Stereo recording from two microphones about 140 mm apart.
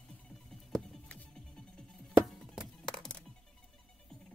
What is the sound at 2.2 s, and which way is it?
Music, centre (ahead or behind).